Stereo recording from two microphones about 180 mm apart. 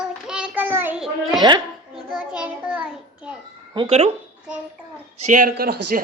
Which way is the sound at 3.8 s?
35° right (ahead or behind).